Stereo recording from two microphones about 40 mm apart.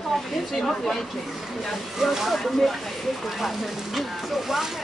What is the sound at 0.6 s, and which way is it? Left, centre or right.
Speech, centre.